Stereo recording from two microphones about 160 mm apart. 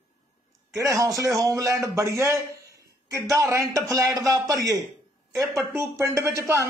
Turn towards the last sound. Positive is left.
turn(degrees=-15)  # may be behind; listen again after turning